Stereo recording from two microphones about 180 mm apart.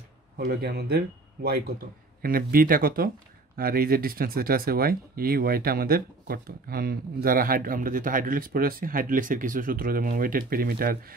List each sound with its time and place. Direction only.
0.4 s speech: 65° right (ahead or behind)